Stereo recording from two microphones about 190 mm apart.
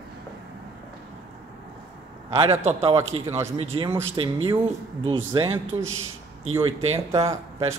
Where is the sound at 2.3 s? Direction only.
30° right (ahead or behind).